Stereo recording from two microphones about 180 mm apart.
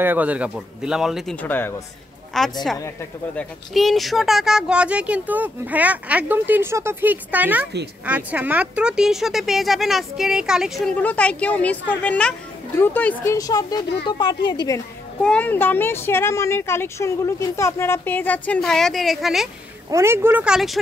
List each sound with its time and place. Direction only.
0.0 s speech: 10° right (ahead or behind); by 14.8 s 25° left (ahead or behind)
15.2 s speech: 10° left (ahead or behind)
19.9 s speech: 15° right (ahead or behind)